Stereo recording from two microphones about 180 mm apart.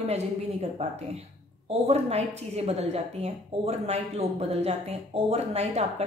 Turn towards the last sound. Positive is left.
turn(degrees=-35)  # may be behind; listen again after turning